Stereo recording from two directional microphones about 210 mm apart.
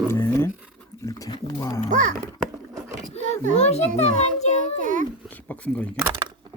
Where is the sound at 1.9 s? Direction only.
35° right (ahead or behind).